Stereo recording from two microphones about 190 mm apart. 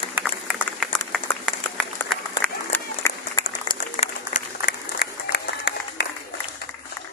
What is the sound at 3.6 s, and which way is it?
Applause, 25° left (ahead or behind).